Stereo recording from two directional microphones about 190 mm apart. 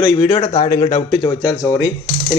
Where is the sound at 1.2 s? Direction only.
20° left (ahead or behind).